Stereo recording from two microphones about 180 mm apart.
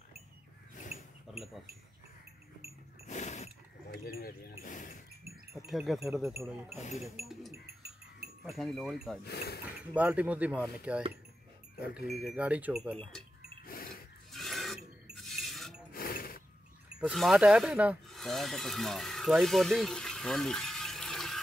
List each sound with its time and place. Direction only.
0.9 s a sound: 60° right (ahead or behind)
1.3 s speech: centre (ahead or behind)
3.1 s pulleys: 40° left (ahead or behind)
3.9 s speech: 55° left (ahead or behind)
5.7 s livestock: centre (ahead or behind)
7.2 s a sound: centre (ahead or behind)
8.5 s livestock: centre (ahead or behind)
9.2 s speech: 65° left (ahead or behind)
9.7 s speech: 5° right (ahead or behind)
13.7 s a sound: 55° left (ahead or behind)
14.3 s a sound: centre (ahead or behind)
15.1 s glass: centre (ahead or behind)
15.9 s music: 55° left (ahead or behind)
17.0 s speech: centre (ahead or behind)